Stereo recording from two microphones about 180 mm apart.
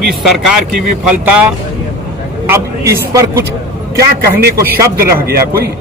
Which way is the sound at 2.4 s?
15° right (ahead or behind).